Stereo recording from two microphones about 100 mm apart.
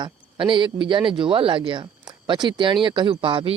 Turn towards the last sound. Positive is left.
turn(degrees=-60)  # may be behind; listen again after turning